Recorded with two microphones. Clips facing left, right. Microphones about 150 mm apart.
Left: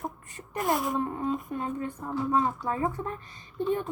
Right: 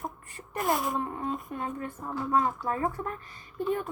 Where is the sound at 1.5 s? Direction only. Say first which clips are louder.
Left 2 dB; 25° left (ahead or behind).